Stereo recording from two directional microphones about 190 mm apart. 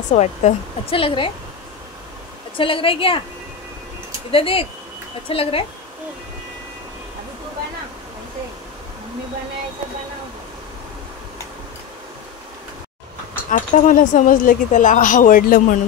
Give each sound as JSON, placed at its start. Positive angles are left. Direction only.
{"t": 0.1, "sound": "speech", "side_deg": 35}
{"t": 2.5, "sound": "a woman's voice", "side_deg": 25}
{"t": 4.3, "sound": "a woman's voice", "side_deg": 30}
{"t": 13.5, "sound": "speech", "side_deg": 45}